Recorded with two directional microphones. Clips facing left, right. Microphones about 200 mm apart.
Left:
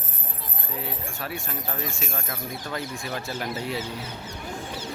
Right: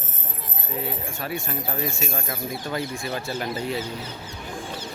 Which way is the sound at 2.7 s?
5° right (ahead or behind).